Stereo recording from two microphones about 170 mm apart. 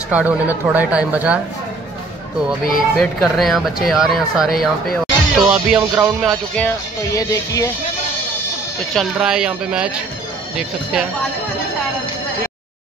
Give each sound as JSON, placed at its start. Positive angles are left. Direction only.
{"t": 0.1, "sound": "speech", "side_deg": -10}
{"t": 3.0, "sound": "speech", "side_deg": 0}
{"t": 5.8, "sound": "speech", "side_deg": -15}
{"t": 6.2, "sound": "music", "side_deg": 5}
{"t": 7.1, "sound": "music", "side_deg": 20}
{"t": 8.9, "sound": "speech", "side_deg": 0}